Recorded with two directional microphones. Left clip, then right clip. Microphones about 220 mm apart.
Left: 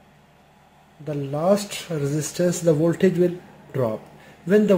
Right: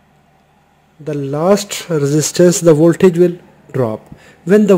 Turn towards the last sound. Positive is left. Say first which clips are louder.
# right 8 dB
turn(degrees=-45)  # may be behind; listen again after turning